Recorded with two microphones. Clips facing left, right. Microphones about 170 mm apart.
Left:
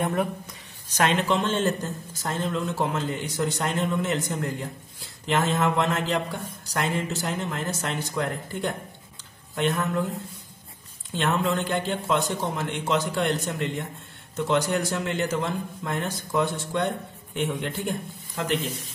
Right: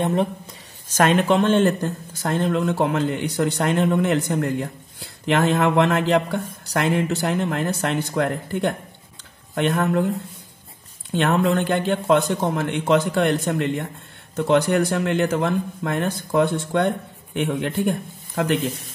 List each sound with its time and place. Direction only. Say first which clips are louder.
0.0 s speech: right 4 dB; 25° right (ahead or behind)
0.9 s a man's voice: right 6 dB; 50° right (ahead or behind)
11.1 s a man's voice: right 6 dB; 60° right (ahead or behind)